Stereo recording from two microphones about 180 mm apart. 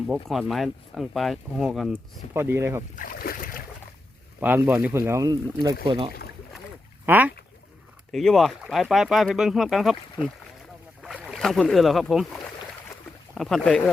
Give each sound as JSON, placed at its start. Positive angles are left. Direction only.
{"t": 0.3, "sound": "speech", "side_deg": 0}
{"t": 2.3, "sound": "speech", "side_deg": -15}
{"t": 2.9, "sound": "speech", "side_deg": 50}
{"t": 4.4, "sound": "speech", "side_deg": -10}
{"t": 7.0, "sound": "speech", "side_deg": -10}
{"t": 8.1, "sound": "speech", "side_deg": 0}
{"t": 11.0, "sound": "speech", "side_deg": -5}